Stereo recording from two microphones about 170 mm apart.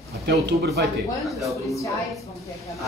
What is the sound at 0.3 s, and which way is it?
Speech, 75° right (ahead or behind).